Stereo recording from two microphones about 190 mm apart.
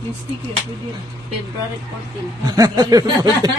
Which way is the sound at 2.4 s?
20° right (ahead or behind).